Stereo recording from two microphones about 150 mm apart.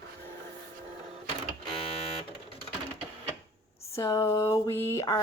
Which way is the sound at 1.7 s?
40° left (ahead or behind).